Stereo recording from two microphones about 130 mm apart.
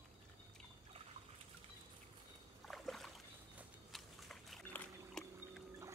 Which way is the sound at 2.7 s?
Centre (ahead or behind).